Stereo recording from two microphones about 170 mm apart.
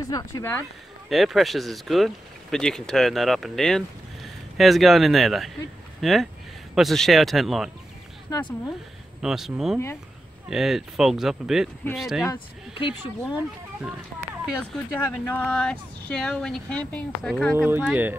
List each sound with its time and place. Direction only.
0.1 s speech: 15° left (ahead or behind)
1.0 s speech: centre (ahead or behind)
8.3 s speech: 25° left (ahead or behind)
9.2 s speech: centre (ahead or behind)
12.7 s speech: 30° left (ahead or behind)
14.9 s speech: 15° left (ahead or behind)
17.6 s speech: 10° right (ahead or behind)